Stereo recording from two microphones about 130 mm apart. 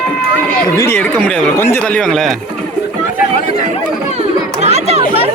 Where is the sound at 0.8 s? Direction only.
15° left (ahead or behind).